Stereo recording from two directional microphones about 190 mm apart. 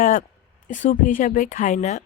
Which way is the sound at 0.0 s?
45° left (ahead or behind).